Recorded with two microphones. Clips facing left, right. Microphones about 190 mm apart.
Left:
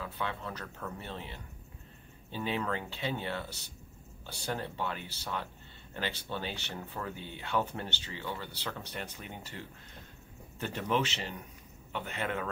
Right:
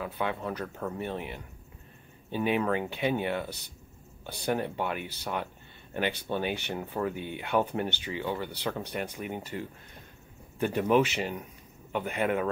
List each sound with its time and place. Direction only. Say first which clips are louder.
0.0 s speech: right 6 dB; 15° right (ahead or behind)